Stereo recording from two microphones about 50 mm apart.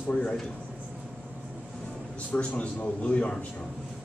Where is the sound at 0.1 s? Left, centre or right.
Left.